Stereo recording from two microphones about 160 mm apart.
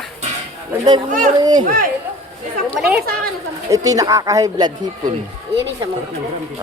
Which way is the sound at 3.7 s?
20° right (ahead or behind).